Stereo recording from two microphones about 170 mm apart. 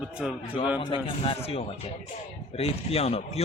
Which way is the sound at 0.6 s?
30° left (ahead or behind).